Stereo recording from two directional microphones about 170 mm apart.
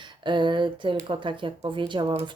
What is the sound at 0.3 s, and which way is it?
Speech, 25° right (ahead or behind).